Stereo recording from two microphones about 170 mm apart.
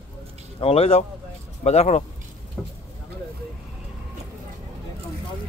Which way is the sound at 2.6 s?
Centre (ahead or behind).